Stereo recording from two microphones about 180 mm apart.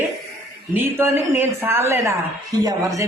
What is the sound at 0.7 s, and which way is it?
A man's voice, 10° right (ahead or behind).